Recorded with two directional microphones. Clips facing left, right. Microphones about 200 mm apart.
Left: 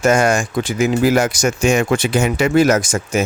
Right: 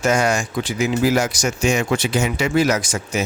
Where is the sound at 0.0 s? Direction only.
50° left (ahead or behind).